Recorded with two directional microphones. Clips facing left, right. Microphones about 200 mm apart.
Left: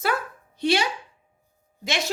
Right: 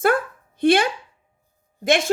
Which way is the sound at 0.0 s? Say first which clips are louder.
Right 7 dB; 50° right (ahead or behind).